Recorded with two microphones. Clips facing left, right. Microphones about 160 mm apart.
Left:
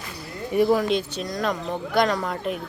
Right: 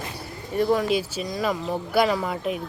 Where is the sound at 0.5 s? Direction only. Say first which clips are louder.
Left 2 dB; centre (ahead or behind).